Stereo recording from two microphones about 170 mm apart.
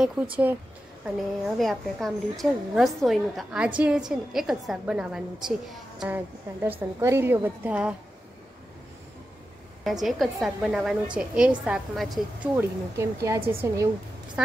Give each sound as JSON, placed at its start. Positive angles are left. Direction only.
{"t": 0.0, "sound": "a woman's voice", "side_deg": -5}
{"t": 1.6, "sound": "a woman's voice", "side_deg": 0}
{"t": 9.8, "sound": "a woman's voice", "side_deg": 0}
{"t": 12.5, "sound": "a woman's voice", "side_deg": -15}